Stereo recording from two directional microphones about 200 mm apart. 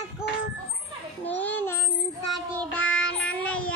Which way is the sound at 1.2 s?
10° left (ahead or behind).